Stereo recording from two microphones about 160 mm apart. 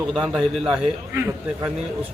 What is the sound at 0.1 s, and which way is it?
Speech, centre (ahead or behind).